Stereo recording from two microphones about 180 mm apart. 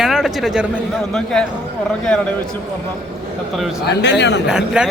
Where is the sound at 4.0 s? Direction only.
70° left (ahead or behind).